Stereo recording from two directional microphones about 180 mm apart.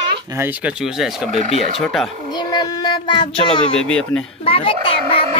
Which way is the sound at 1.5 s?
35° left (ahead or behind).